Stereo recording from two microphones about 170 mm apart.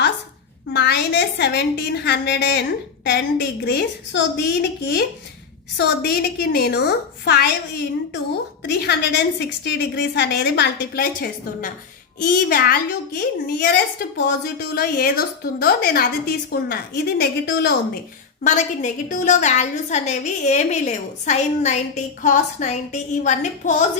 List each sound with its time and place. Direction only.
0.7 s a woman's voice: 90° left
5.7 s a woman's voice: 70° left (ahead or behind); by 13.7 s 55° left (ahead or behind)
14.3 s a woman's voice: 70° left (ahead or behind)
18.4 s a woman's voice: 45° left (ahead or behind)